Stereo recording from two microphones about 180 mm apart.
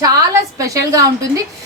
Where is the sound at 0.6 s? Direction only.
20° right (ahead or behind).